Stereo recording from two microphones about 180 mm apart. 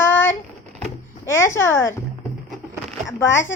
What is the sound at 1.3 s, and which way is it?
Speech, 15° left (ahead or behind).